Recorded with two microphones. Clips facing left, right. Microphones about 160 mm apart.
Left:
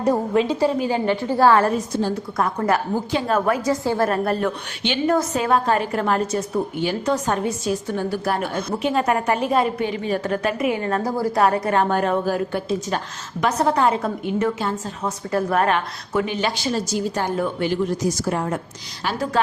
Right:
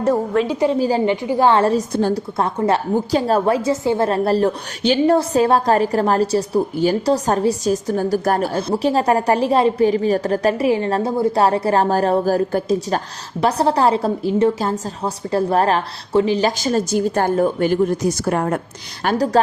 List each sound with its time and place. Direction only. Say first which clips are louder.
0.0 s a woman's voice: right 2 dB; 15° left (ahead or behind)
0.8 s a woman's voice: right 4 dB; 35° right (ahead or behind)
1.0 s a woman's voice: right 1 dB; 15° right (ahead or behind)
1.9 s a woman's voice: right 4 dB; 55° right (ahead or behind)
2.6 s a woman's voice: right 5 dB; 30° right (ahead or behind); by 18.6 s 60° right (ahead or behind)
19.0 s a woman's voice: right 7 dB; 40° right (ahead or behind)